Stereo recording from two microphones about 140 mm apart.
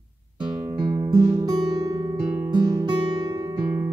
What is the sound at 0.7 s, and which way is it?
Music, 30° right (ahead or behind).